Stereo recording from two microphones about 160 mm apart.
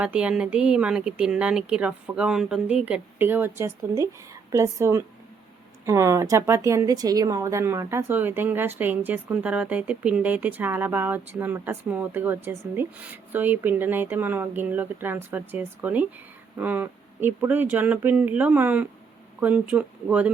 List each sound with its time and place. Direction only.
0.0 s a woman's voice: 5° right (ahead or behind)